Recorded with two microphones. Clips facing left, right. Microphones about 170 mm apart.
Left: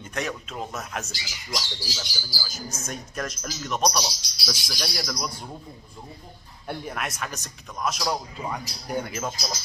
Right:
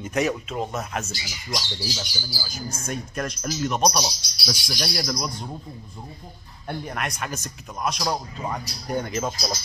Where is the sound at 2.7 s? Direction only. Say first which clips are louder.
Right 3 dB; centre (ahead or behind).